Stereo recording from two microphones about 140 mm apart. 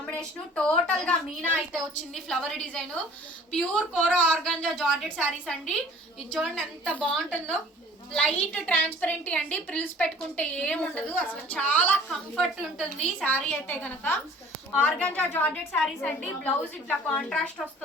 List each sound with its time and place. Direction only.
0.0 s a woman's voice: 5° left (ahead or behind)